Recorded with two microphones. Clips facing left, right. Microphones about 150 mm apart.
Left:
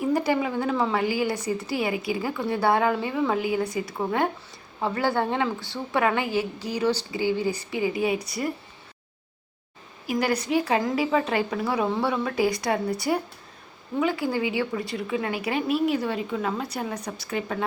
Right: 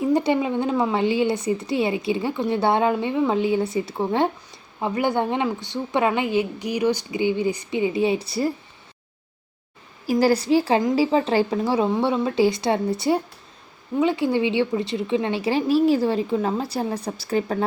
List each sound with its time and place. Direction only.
0.0 s a woman's voice: 25° right (ahead or behind)
10.1 s a woman's voice: 35° right (ahead or behind)